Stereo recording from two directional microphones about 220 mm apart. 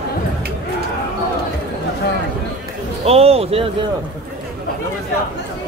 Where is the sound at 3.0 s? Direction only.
25° right (ahead or behind).